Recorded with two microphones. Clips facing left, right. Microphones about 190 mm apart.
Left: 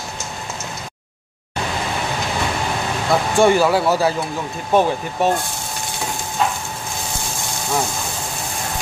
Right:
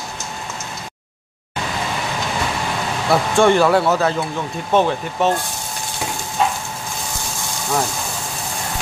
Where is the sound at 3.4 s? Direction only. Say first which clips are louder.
Right 1 dB; 5° left (ahead or behind).